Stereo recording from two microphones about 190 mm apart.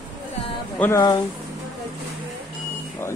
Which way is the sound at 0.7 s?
15° left (ahead or behind).